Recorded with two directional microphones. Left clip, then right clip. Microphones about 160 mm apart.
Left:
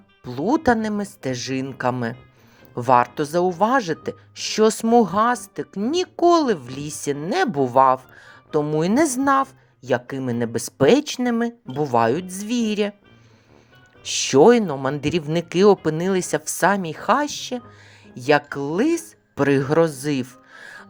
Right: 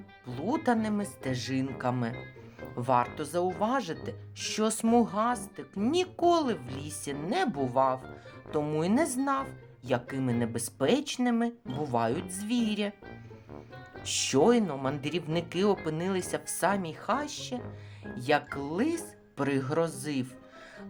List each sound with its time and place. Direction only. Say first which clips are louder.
0.3 s speech: left 10 dB; 40° left (ahead or behind)
5.9 s speech: left 8 dB; 35° left (ahead or behind); by 8.2 s 50° left (ahead or behind)
8.4 s speech: left 9 dB; 35° left (ahead or behind)
9.0 s speech: left 14 dB; 50° left (ahead or behind)
9.8 s speech: left 8 dB; 35° left (ahead or behind)
14.0 s speech: left 11 dB; 35° left (ahead or behind); by 20.8 s 50° left (ahead or behind)